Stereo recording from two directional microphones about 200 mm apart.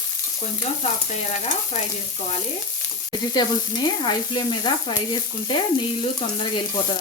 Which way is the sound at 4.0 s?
20° left (ahead or behind).